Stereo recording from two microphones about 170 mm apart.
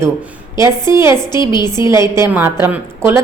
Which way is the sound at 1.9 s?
15° right (ahead or behind).